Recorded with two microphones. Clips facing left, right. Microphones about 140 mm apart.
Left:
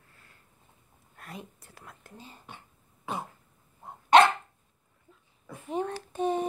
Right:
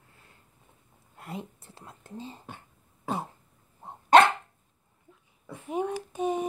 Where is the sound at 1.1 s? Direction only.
20° right (ahead or behind).